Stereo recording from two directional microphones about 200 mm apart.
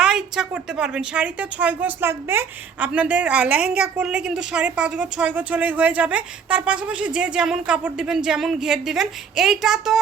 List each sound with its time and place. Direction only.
0.0 s a woman's voice: 5° right (ahead or behind)